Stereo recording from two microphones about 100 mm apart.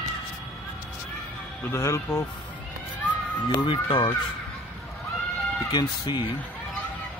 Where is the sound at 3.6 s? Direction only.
55° left (ahead or behind).